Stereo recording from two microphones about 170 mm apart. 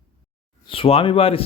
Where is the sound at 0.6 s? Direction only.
30° left (ahead or behind).